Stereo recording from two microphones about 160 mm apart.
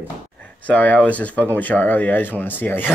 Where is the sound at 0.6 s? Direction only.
10° left (ahead or behind).